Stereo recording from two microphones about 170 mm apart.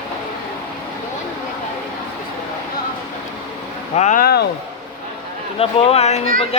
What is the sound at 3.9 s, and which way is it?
Speech, 40° left (ahead or behind).